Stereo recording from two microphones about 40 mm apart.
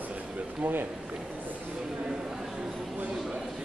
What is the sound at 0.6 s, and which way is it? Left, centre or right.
Speech, right.